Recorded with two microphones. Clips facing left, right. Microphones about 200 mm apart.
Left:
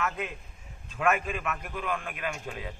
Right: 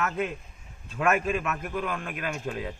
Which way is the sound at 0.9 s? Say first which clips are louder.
Right 3 dB; 45° right (ahead or behind).